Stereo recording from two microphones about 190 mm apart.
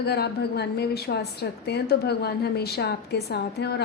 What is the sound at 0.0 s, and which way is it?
A woman's voice, 60° left (ahead or behind).